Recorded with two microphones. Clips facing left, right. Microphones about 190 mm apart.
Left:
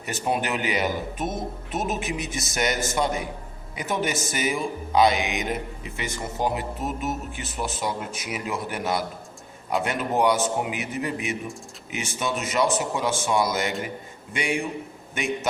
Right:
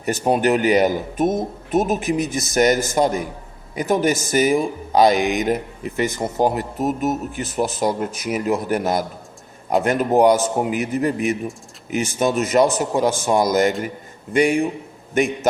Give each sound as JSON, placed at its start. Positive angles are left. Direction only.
{"t": 0.0, "sound": "speech", "side_deg": -40}